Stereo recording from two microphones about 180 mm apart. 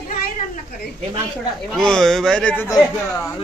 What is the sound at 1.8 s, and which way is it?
Speech, 5° left (ahead or behind).